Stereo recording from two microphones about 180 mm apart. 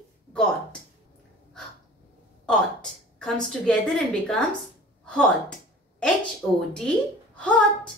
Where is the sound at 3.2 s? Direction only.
Centre (ahead or behind).